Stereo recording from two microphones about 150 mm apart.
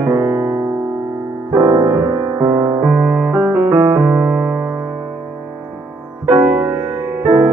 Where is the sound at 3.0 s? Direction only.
5° right (ahead or behind).